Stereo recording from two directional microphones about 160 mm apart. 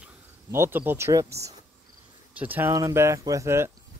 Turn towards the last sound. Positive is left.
turn(degrees=-15)  # may be behind; listen again after turning